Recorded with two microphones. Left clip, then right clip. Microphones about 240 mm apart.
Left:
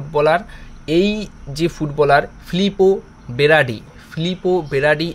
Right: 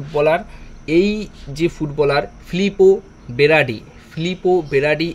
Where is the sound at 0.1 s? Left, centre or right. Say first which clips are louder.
Left 1 dB; centre.